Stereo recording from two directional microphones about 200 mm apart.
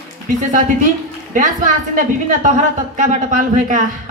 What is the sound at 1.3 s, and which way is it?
A woman's voice, 40° right (ahead or behind).